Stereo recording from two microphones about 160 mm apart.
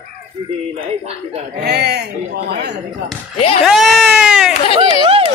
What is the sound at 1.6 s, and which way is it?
Speech, 90° right.